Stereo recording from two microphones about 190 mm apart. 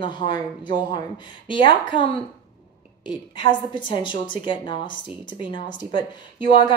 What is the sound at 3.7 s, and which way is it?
A woman's voice, 25° left (ahead or behind).